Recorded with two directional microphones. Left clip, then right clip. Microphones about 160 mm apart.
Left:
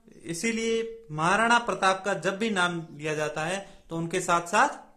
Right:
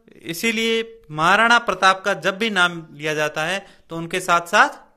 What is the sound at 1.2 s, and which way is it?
A man's voice, 20° right (ahead or behind).